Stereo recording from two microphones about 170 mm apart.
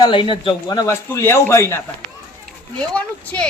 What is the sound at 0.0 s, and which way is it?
A man's voice, 30° left (ahead or behind).